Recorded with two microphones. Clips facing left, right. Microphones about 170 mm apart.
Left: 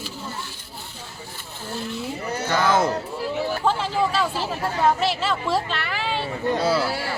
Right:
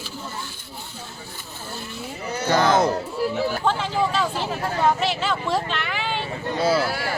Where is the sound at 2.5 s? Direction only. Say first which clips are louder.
Right 2 dB; 35° right (ahead or behind).